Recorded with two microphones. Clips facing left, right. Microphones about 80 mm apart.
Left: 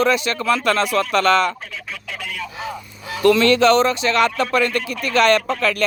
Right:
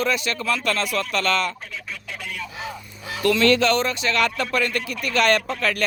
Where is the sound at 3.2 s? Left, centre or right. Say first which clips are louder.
Left 4 dB; left.